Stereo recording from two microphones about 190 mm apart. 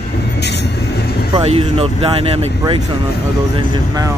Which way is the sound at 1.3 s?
30° right (ahead or behind).